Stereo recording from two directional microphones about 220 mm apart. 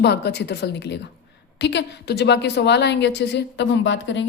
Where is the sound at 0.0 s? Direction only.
50° left (ahead or behind).